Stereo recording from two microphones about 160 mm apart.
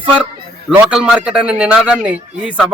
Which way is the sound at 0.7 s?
5° right (ahead or behind).